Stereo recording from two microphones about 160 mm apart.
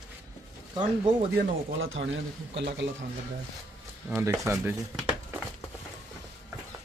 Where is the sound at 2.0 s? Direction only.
90° right.